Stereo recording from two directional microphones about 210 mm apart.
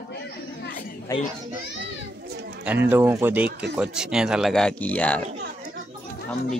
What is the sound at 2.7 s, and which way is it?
Speech, 10° right (ahead or behind).